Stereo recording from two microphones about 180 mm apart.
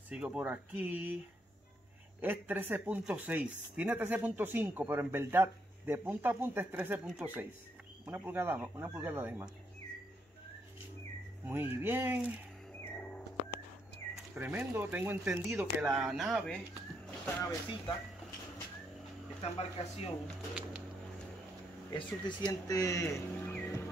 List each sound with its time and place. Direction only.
0.1 s speech: 5° right (ahead or behind)
2.2 s speech: 10° right (ahead or behind)
11.4 s speech: 10° right (ahead or behind)
12.8 s a sound: 5° left (ahead or behind)
14.1 s speech: 10° right (ahead or behind)
17.4 s speech: 15° left (ahead or behind)
19.4 s speech: 35° left (ahead or behind)
20.2 s speech: 5° right (ahead or behind)
21.9 s speech: 20° left (ahead or behind)